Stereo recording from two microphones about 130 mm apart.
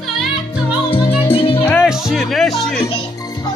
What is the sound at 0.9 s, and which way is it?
Music, 45° left (ahead or behind).